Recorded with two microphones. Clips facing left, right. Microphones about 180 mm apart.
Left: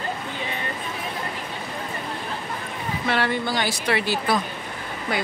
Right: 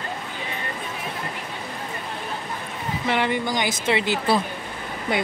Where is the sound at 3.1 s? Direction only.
15° right (ahead or behind).